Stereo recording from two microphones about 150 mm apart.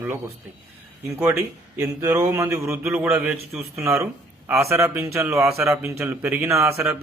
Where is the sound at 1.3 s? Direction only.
20° right (ahead or behind).